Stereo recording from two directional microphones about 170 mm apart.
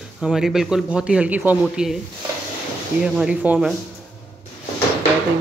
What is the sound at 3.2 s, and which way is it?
Speech, 5° right (ahead or behind).